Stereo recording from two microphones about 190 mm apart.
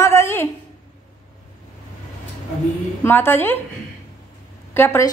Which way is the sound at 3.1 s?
10° left (ahead or behind).